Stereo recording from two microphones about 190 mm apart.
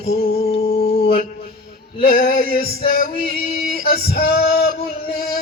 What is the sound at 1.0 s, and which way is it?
Speech, 50° left (ahead or behind).